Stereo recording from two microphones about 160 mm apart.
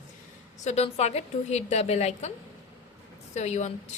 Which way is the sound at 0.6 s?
45° left (ahead or behind).